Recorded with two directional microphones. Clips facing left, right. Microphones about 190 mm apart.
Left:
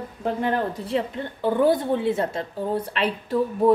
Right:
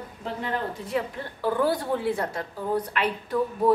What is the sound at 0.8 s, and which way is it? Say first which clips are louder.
A woman's voice: left 3 dB; 25° left (ahead or behind).